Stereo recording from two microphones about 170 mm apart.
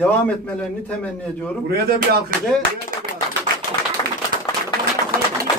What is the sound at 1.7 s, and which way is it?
Speech, 65° right (ahead or behind).